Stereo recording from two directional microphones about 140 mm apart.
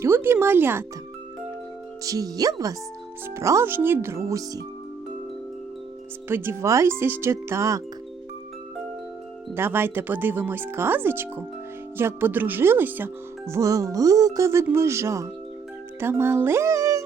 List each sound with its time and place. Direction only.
0.0 s speech: 15° right (ahead or behind)
2.0 s speech: 25° right (ahead or behind)
6.2 s speech: 15° right (ahead or behind)
9.6 s speech: 15° right (ahead or behind)